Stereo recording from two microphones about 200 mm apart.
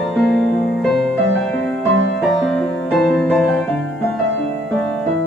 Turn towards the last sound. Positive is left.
turn(degrees=0)  # may be behind; listen again after turning